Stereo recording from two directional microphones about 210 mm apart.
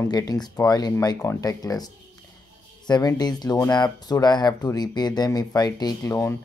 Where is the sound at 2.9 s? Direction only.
20° left (ahead or behind).